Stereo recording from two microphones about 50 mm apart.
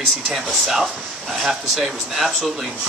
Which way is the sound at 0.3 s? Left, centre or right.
Centre.